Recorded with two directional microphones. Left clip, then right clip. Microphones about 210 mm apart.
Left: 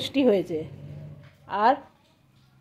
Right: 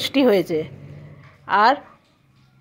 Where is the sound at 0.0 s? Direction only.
15° right (ahead or behind).